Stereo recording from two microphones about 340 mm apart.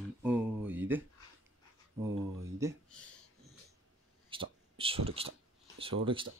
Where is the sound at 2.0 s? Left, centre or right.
Centre.